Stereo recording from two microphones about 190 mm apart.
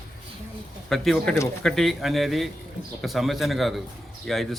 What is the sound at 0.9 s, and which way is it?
A man's voice, centre (ahead or behind).